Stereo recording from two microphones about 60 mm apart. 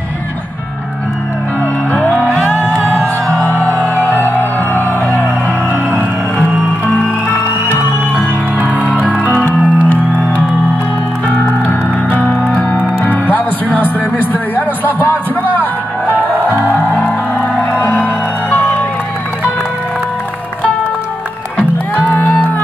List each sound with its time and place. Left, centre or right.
1.9 s music: left
5.7 s music: right
6.9 s music: left
8.5 s music: right
9.8 s music: left
13.0 s music: left
16.1 s music: right
17.9 s music: left
22.1 s music: left